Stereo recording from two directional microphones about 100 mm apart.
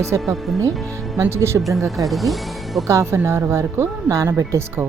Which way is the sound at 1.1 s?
25° right (ahead or behind).